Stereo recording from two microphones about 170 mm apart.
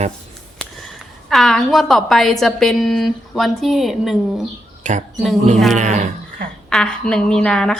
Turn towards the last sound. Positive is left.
turn(degrees=5)  # may be behind; listen again after turning